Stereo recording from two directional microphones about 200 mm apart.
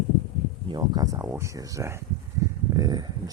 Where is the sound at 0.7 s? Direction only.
20° right (ahead or behind).